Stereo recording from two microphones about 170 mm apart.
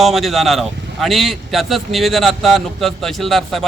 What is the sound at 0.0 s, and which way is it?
Speech, centre (ahead or behind).